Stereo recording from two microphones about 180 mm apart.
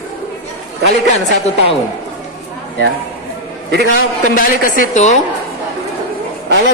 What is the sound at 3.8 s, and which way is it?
A man's voice, 50° left (ahead or behind).